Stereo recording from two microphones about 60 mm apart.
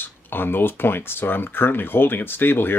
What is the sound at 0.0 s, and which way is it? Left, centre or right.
Speech, left.